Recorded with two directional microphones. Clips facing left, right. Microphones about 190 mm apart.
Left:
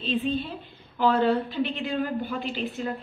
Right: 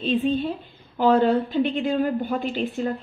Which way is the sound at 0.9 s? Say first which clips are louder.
Right 4 dB; 45° right (ahead or behind).